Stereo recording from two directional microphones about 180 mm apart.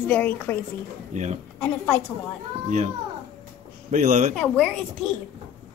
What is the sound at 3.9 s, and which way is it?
Speech, 40° right (ahead or behind).